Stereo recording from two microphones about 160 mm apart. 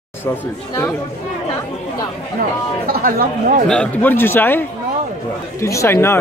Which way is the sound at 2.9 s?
65° right (ahead or behind).